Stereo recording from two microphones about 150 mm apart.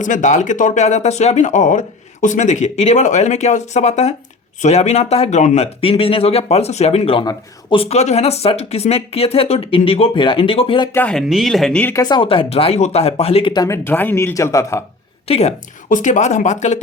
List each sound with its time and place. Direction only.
0.0 s speech: 55° left (ahead or behind)
5.8 s speech: 40° left (ahead or behind)
10.9 s speech: 5° left (ahead or behind)
12.0 s speech: 35° left (ahead or behind)
13.5 s speech: 25° left (ahead or behind)
13.8 s speech: 15° left (ahead or behind)
15.3 s speech: 45° left (ahead or behind)
15.9 s speech: 60° left (ahead or behind)